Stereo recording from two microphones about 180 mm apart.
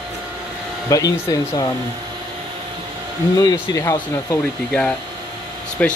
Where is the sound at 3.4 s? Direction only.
20° left (ahead or behind).